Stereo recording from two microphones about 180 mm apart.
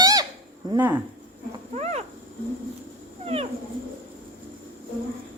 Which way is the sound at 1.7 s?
35° right (ahead or behind).